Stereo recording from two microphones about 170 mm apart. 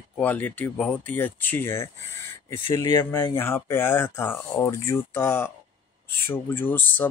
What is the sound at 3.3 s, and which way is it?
Speech, 15° left (ahead or behind).